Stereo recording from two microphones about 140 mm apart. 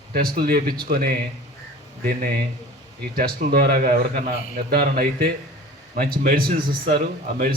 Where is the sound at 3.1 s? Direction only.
90° right.